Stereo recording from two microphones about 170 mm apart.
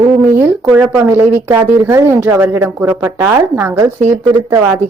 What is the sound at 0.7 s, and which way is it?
Speech, 10° right (ahead or behind).